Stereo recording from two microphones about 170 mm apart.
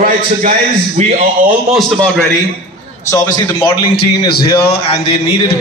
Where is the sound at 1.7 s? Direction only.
Centre (ahead or behind).